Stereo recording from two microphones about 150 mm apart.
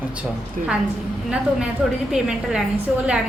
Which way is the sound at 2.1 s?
5° right (ahead or behind).